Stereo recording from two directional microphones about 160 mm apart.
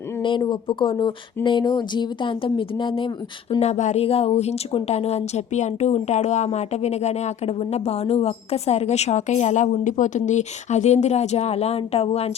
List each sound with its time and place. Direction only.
0.2 s speech: 30° left (ahead or behind)
3.6 s a woman's voice: 45° left (ahead or behind)